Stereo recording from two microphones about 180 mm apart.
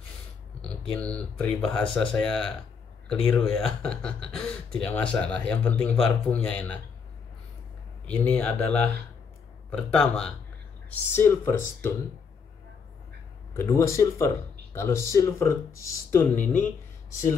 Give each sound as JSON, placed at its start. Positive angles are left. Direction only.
{"t": 0.6, "sound": "speech", "side_deg": 5}
{"t": 8.1, "sound": "speech", "side_deg": 10}
{"t": 13.5, "sound": "speech", "side_deg": 15}